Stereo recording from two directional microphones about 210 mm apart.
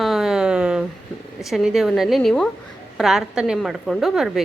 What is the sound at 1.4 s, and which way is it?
A woman's voice, centre (ahead or behind).